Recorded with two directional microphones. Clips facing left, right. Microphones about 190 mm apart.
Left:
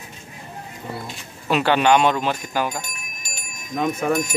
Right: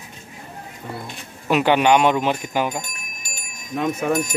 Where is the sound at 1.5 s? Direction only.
15° right (ahead or behind).